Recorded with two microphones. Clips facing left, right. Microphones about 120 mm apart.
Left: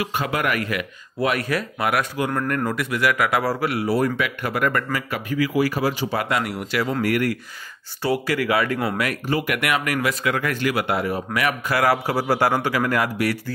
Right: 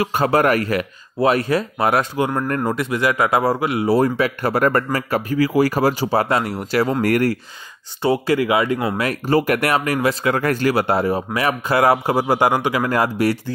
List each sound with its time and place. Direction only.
0.0 s speech: 40° right (ahead or behind)
8.0 s speech: 25° right (ahead or behind)
9.0 s speech: 35° right (ahead or behind)